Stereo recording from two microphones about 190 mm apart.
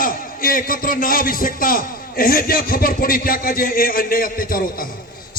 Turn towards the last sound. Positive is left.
turn(degrees=50)  # may be behind; listen again after turning